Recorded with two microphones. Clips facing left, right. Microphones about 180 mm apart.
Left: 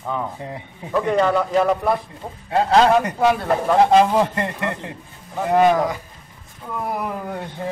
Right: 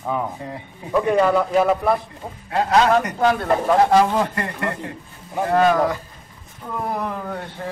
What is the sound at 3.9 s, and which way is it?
A man's voice, 20° left (ahead or behind).